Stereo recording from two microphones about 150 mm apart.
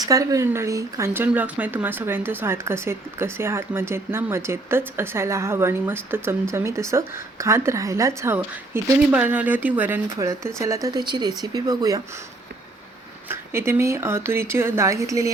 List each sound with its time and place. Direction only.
0.0 s speech: 25° right (ahead or behind)
13.2 s speech: 15° right (ahead or behind)